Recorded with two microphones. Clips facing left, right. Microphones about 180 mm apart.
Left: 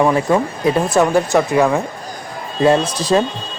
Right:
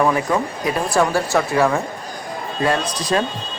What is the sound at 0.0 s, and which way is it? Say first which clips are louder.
Speech: left 4 dB; 25° left (ahead or behind).